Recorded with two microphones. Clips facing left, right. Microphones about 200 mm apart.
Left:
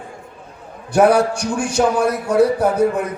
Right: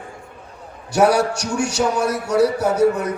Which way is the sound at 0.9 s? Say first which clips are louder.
Left 3 dB; 55° left (ahead or behind).